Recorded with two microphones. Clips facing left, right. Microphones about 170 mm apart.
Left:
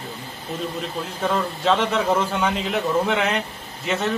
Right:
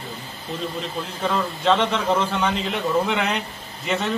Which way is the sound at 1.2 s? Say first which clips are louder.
Even; 5° left (ahead or behind).